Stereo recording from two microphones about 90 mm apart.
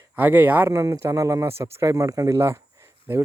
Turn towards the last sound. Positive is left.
turn(degrees=-30)  # may be behind; listen again after turning